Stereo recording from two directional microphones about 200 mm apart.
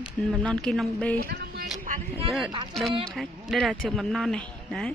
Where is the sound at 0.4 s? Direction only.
5° left (ahead or behind).